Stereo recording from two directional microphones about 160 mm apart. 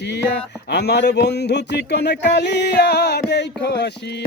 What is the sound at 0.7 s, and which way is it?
Speech, 90° left.